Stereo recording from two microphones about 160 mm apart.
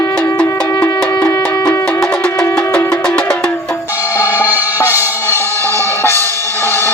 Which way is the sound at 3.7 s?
15° left (ahead or behind).